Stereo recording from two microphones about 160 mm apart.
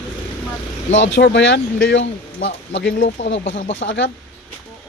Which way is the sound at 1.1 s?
90° left.